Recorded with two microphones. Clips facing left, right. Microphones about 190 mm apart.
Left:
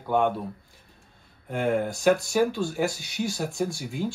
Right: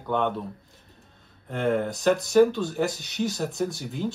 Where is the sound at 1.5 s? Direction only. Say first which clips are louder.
Even; 5° left (ahead or behind).